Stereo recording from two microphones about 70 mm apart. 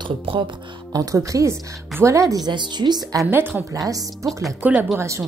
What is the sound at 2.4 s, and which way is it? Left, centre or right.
Speech, right.